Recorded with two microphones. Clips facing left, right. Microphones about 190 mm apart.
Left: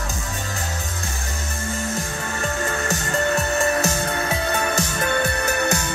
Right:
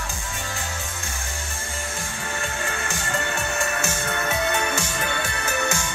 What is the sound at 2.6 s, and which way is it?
Music, 40° left (ahead or behind).